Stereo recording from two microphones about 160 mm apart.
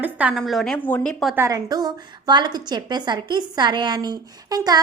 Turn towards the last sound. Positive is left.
turn(degrees=-25)  # may be behind; listen again after turning